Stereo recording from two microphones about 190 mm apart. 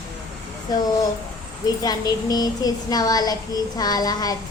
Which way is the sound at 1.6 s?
20° left (ahead or behind).